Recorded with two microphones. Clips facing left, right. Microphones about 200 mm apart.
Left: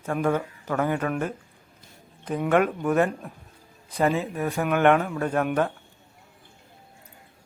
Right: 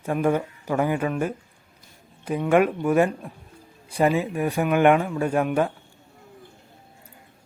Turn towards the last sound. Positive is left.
turn(degrees=-10)  # may be behind; listen again after turning